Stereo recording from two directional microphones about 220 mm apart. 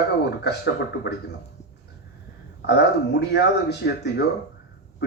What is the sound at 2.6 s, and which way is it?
Speech, 50° left (ahead or behind).